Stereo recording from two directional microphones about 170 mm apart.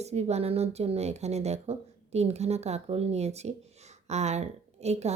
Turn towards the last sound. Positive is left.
turn(degrees=-40)  # may be behind; listen again after turning